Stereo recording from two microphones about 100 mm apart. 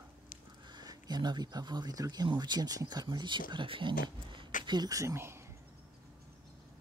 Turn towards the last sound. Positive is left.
turn(degrees=-25)  # may be behind; listen again after turning